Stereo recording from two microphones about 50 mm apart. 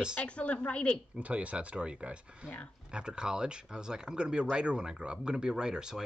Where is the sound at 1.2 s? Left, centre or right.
Right.